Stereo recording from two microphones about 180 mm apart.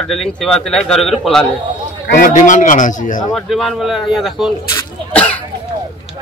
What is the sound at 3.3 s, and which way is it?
A man's voice, centre (ahead or behind).